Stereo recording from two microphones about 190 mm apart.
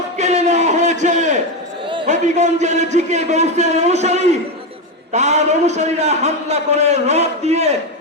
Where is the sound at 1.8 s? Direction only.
25° right (ahead or behind).